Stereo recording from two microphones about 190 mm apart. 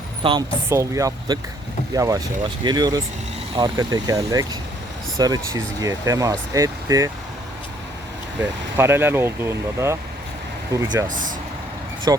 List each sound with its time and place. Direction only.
0.2 s speech: 25° right (ahead or behind)
0.7 s speech: 15° right (ahead or behind)
8.4 s speech: 10° right (ahead or behind)
11.1 s speech: 45° right (ahead or behind)
12.1 s speech: 20° right (ahead or behind)